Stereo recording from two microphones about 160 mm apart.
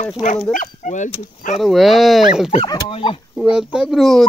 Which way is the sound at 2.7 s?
35° left (ahead or behind).